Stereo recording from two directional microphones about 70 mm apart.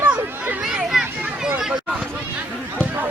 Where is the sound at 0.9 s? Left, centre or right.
Centre.